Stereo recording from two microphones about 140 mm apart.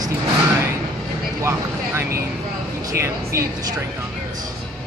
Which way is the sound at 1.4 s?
20° right (ahead or behind).